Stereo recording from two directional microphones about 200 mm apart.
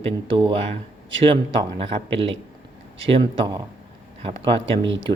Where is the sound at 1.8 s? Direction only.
30° right (ahead or behind).